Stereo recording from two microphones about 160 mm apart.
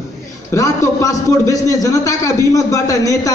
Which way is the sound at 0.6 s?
20° left (ahead or behind).